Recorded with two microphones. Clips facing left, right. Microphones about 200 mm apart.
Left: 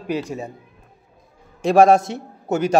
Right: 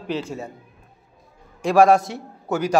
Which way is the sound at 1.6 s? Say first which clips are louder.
Left 2 dB; 25° left (ahead or behind).